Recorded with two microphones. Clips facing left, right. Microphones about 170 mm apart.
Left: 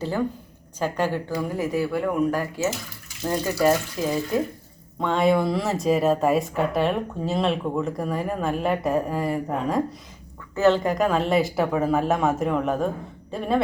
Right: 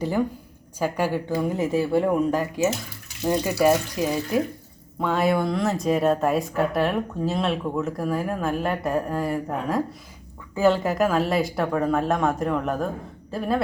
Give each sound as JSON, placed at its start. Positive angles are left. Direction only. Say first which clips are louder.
{"t": 0.0, "sound": "speech", "louder": "right 1 dB", "side_deg": -15}
{"t": 1.3, "sound": "speech", "louder": "right 2 dB", "side_deg": -20}
{"t": 4.9, "sound": "a woman's voice", "louder": "left 1 dB", "side_deg": -5}